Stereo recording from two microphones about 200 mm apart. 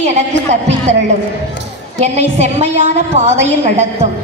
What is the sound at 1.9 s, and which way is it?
A woman's voice, 35° right (ahead or behind).